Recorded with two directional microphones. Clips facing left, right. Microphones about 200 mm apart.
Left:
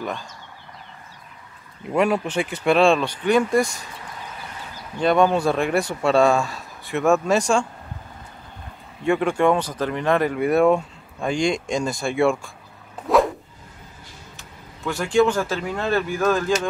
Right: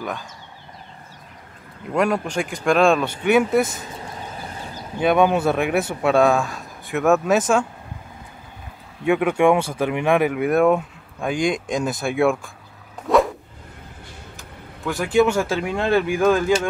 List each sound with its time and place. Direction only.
2.0 s speech: 5° left (ahead or behind)
3.7 s a sound: 30° right (ahead or behind)
5.0 s speech: 5° right (ahead or behind)
9.0 s speech: 5° right (ahead or behind)
13.1 s a sound: centre (ahead or behind)
15.0 s speech: 5° right (ahead or behind)